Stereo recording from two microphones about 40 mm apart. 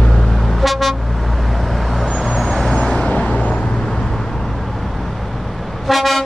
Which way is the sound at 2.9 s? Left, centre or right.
Left.